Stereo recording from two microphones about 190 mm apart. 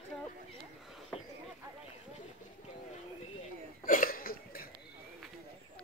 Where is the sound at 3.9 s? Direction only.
50° left (ahead or behind).